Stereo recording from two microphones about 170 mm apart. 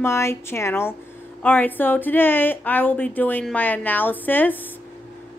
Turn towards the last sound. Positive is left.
turn(degrees=10)  # may be behind; listen again after turning